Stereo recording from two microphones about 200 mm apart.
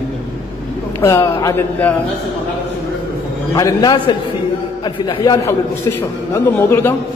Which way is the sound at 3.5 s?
20° left (ahead or behind).